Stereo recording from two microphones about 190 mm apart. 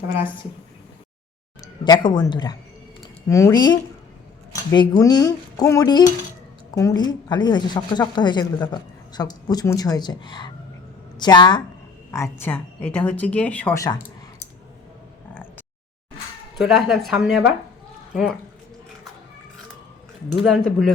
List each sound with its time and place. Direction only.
1.6 s a woman's voice: 20° left (ahead or behind)
16.6 s speech: centre (ahead or behind)
20.4 s speech: 5° left (ahead or behind)